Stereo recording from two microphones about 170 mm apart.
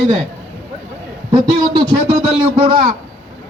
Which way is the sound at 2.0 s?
35° right (ahead or behind).